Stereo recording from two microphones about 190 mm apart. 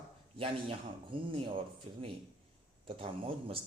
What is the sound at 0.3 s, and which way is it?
Speech, 30° right (ahead or behind).